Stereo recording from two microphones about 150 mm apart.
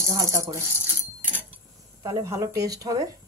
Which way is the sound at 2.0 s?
20° right (ahead or behind).